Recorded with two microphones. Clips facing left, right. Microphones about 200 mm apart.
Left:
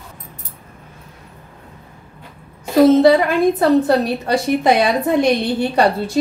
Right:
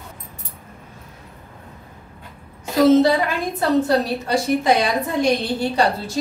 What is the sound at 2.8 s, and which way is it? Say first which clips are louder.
A woman's voice: left 4 dB; 55° left (ahead or behind).